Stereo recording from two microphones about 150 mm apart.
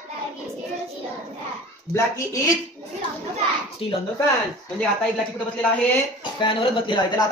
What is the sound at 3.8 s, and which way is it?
Speech, 35° left (ahead or behind).